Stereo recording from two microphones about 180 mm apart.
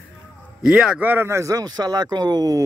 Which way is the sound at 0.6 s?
5° right (ahead or behind).